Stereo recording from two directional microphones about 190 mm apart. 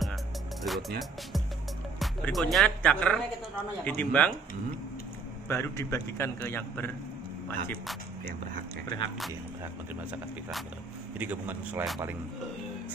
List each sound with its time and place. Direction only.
0.7 s a man's voice: centre (ahead or behind)
5.5 s a man's voice: 15° left (ahead or behind)
8.8 s speech: 25° left (ahead or behind)
11.1 s speech: 10° right (ahead or behind)